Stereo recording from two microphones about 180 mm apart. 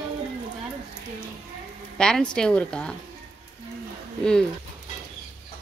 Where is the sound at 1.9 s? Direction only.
5° left (ahead or behind).